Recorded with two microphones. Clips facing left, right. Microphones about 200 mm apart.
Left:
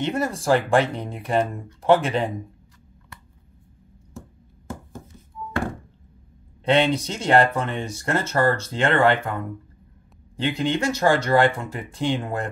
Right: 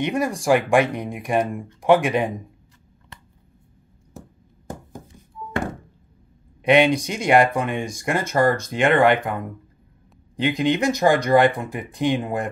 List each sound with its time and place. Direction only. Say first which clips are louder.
0.0 s speech: right 2 dB; 15° right (ahead or behind)
6.6 s speech: right 3 dB; 15° right (ahead or behind)